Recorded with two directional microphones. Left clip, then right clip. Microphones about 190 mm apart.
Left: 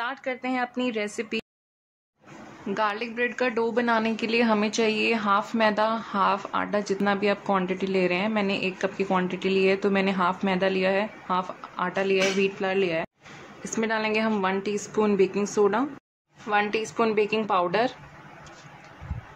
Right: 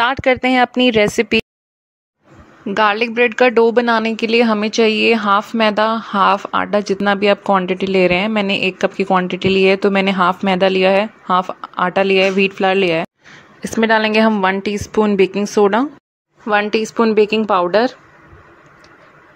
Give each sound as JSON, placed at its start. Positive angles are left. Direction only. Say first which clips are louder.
{"t": 0.0, "sound": "a woman's voice", "louder": "right 16 dB", "side_deg": -50}
{"t": 2.6, "sound": "a woman's voice", "louder": "right 12 dB", "side_deg": -45}